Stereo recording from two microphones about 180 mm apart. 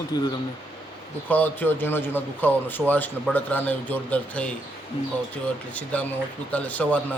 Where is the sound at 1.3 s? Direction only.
10° left (ahead or behind).